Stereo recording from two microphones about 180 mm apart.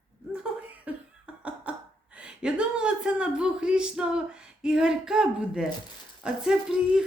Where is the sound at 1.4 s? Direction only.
5° right (ahead or behind).